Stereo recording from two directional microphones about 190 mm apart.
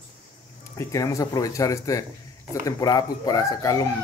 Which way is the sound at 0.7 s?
15° left (ahead or behind).